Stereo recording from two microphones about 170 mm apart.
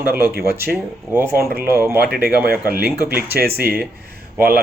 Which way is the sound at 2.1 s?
65° right (ahead or behind).